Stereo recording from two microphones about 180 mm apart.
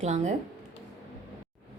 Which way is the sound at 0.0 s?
40° right (ahead or behind).